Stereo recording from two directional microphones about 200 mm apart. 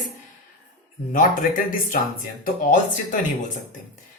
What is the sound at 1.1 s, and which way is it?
Speech, 45° left (ahead or behind).